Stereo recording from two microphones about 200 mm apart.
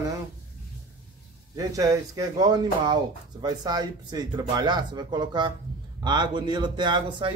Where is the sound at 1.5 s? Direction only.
15° right (ahead or behind).